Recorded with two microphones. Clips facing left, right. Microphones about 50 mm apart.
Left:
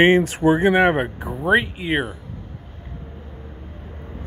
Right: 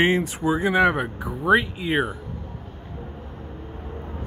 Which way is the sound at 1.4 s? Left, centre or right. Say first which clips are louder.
Left 1 dB; left.